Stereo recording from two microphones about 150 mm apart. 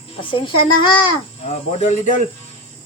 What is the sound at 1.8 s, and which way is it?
Speech, 50° left (ahead or behind).